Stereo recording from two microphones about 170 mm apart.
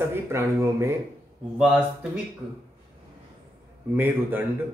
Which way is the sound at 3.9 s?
10° right (ahead or behind).